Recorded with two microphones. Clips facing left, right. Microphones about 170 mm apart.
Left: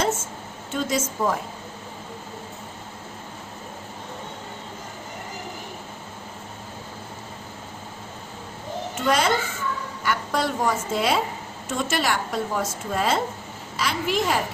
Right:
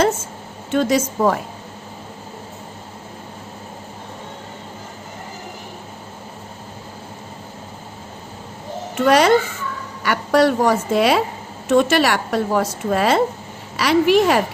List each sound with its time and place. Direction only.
0.7 s a woman's voice: 65° right (ahead or behind)
9.0 s a woman's voice: 70° right (ahead or behind)